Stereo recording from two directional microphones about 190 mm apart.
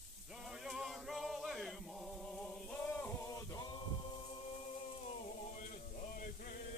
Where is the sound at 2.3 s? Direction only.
5° left (ahead or behind).